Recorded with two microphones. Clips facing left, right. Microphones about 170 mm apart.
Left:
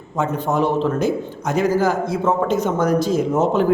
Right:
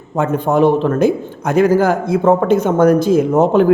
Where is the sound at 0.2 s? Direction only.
55° right (ahead or behind).